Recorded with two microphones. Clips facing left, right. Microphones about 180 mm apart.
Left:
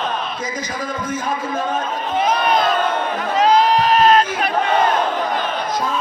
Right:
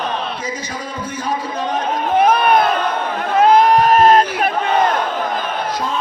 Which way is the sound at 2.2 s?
60° right (ahead or behind).